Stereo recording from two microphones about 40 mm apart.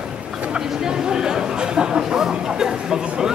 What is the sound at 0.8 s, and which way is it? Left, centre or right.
Chatter, centre.